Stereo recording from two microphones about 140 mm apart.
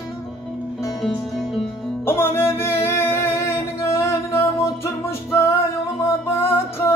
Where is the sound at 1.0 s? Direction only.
Centre (ahead or behind).